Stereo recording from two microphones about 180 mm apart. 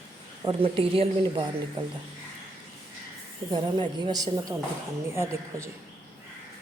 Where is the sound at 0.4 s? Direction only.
30° right (ahead or behind).